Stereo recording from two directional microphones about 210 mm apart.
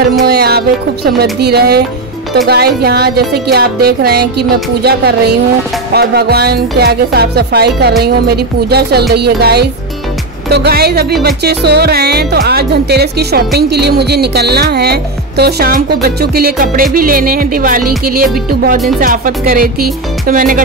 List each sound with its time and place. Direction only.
0.2 s speech: 50° right (ahead or behind)
18.9 s music: 40° right (ahead or behind)